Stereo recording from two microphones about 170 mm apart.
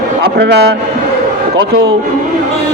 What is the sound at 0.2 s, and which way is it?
Speech, 75° right (ahead or behind).